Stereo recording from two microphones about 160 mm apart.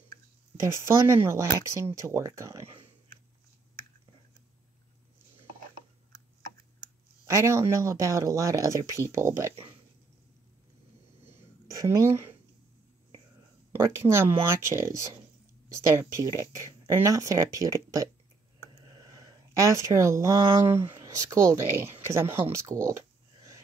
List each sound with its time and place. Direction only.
0.8 s speech: 15° right (ahead or behind)
7.2 s speech: 20° right (ahead or behind)
11.2 s a sound: 20° right (ahead or behind)
13.7 s speech: 15° right (ahead or behind)
16.0 s speech: 20° right (ahead or behind)
19.1 s speech: 20° right (ahead or behind)